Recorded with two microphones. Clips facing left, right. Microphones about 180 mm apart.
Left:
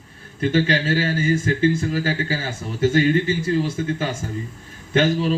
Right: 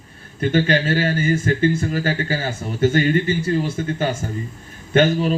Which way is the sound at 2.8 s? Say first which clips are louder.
Even; 60° right (ahead or behind).